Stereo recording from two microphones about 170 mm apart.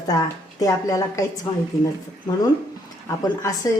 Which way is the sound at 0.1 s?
20° left (ahead or behind).